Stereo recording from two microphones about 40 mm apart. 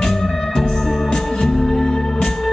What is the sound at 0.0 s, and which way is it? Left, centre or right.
Music, centre.